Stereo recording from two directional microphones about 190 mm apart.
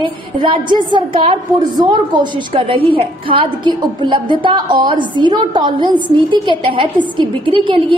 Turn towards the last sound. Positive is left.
turn(degrees=-25)  # may be behind; listen again after turning